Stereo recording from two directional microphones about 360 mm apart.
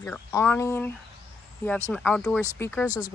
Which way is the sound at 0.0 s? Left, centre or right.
Centre.